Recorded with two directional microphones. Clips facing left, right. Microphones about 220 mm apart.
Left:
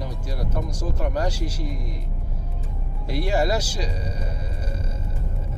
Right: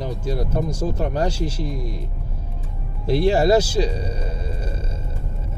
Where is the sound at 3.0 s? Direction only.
30° right (ahead or behind).